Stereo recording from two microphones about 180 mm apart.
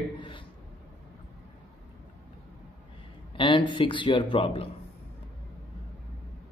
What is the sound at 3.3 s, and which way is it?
Speech, 25° left (ahead or behind).